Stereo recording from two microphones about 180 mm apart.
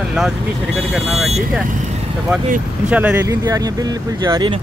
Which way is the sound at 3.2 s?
20° right (ahead or behind).